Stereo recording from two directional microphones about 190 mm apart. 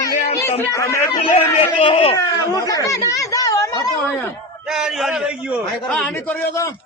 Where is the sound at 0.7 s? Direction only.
15° left (ahead or behind).